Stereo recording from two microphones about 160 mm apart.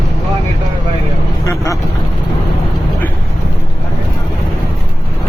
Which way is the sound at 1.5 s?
20° left (ahead or behind).